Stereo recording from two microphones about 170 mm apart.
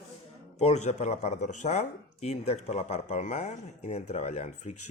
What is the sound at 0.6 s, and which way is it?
Speech, 40° left (ahead or behind).